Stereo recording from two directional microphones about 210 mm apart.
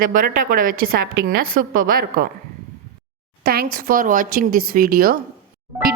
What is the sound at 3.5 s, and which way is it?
Speech, 45° right (ahead or behind).